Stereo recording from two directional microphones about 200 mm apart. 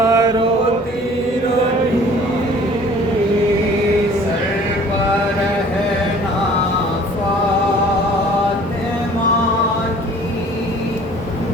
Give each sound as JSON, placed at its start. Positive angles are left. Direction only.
{"t": 0.0, "sound": "mantra", "side_deg": -15}